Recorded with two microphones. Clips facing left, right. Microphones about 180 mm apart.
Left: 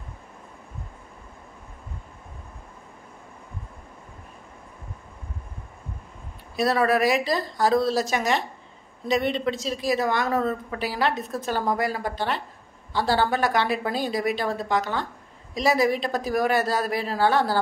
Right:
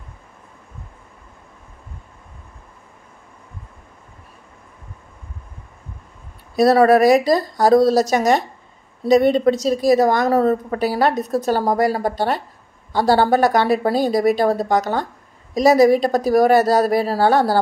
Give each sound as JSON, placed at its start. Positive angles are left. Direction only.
{"t": 6.5, "sound": "a woman's voice", "side_deg": -40}